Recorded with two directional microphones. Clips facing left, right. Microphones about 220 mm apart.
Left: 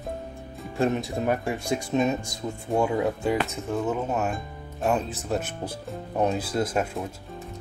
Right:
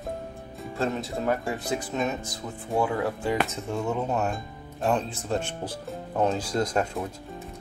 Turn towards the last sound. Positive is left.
turn(degrees=5)  # may be behind; listen again after turning